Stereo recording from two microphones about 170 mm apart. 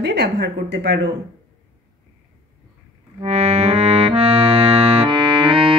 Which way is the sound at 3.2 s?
40° right (ahead or behind).